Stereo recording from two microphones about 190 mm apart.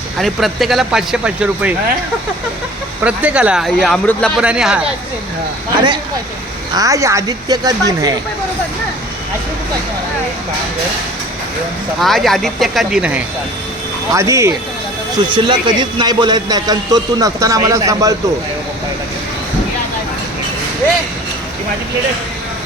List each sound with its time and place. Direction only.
0.2 s speech: centre (ahead or behind)
3.0 s speech: 5° right (ahead or behind)
6.7 s speech: 15° right (ahead or behind)
11.9 s speech: centre (ahead or behind)
14.1 s speech: 15° right (ahead or behind)